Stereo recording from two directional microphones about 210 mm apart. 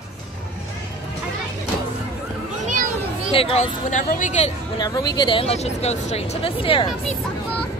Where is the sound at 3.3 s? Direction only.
25° left (ahead or behind).